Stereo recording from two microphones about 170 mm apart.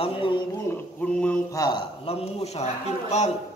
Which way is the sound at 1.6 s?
25° left (ahead or behind).